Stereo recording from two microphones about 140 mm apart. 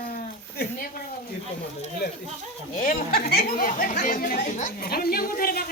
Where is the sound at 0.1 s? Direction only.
90° left.